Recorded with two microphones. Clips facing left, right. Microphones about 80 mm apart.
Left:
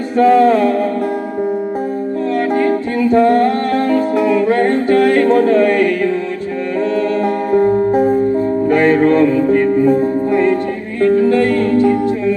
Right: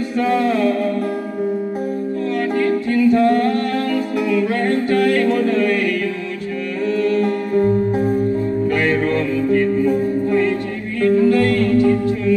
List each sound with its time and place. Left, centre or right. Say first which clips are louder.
0.2 s music: left 8 dB; left
2.5 s music: left 2 dB; left
7.0 s music: left 2 dB; left